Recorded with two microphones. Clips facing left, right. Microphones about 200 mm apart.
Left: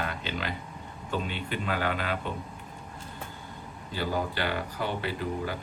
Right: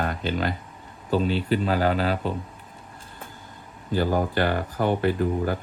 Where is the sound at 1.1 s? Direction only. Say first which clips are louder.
Right 10 dB; 35° right (ahead or behind).